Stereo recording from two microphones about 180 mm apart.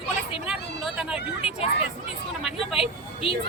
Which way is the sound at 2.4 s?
5° right (ahead or behind).